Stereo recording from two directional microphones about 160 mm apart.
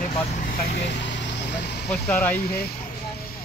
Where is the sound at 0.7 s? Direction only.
90° left.